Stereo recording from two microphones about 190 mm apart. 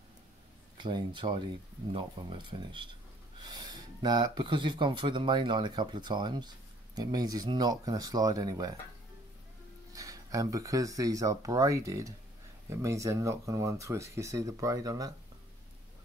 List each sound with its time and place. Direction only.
0.7 s speech: 25° right (ahead or behind)
9.9 s speech: 15° right (ahead or behind)